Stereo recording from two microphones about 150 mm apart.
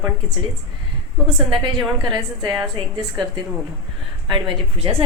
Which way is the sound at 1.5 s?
30° right (ahead or behind).